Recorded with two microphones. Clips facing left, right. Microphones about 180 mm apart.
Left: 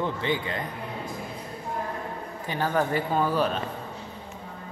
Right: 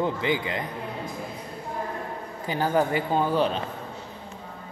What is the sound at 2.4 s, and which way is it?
Speech, 30° right (ahead or behind).